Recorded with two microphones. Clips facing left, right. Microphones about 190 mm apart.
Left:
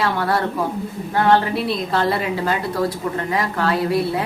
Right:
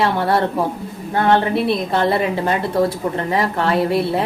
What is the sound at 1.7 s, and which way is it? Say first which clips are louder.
A woman's voice: right 3 dB; 25° right (ahead or behind).